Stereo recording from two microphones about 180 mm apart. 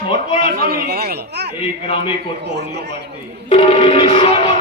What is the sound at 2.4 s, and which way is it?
Speech, 70° right (ahead or behind).